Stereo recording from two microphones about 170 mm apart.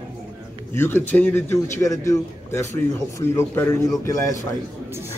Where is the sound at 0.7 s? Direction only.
15° left (ahead or behind).